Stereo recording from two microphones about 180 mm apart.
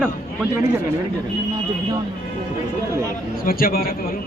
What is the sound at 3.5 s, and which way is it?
Speech, 55° left (ahead or behind).